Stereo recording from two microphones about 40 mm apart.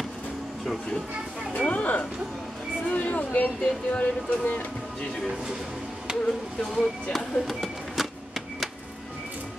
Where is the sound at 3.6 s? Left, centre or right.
Left.